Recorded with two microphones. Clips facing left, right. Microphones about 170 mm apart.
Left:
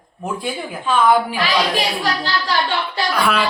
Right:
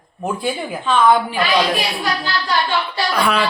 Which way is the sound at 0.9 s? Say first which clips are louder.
Right 1 dB; 10° left (ahead or behind).